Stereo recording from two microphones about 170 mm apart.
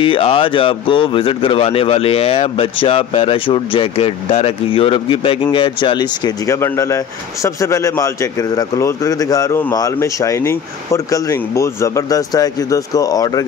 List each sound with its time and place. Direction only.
0.0 s a man's voice: 30° left (ahead or behind)